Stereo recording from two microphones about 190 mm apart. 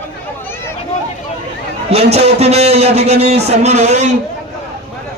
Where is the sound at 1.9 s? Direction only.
35° right (ahead or behind).